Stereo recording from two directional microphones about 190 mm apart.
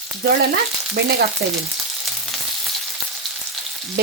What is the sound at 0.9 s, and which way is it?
Frying, 60° right (ahead or behind).